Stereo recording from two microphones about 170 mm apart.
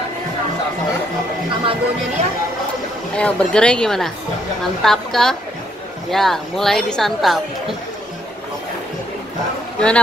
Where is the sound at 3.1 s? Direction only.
5° left (ahead or behind).